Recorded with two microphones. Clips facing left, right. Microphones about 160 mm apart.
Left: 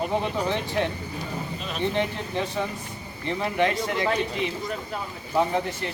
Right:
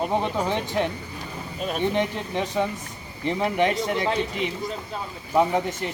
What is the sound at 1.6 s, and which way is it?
Speech, 50° right (ahead or behind).